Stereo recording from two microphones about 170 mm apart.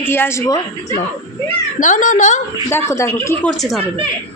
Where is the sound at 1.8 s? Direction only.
50° left (ahead or behind).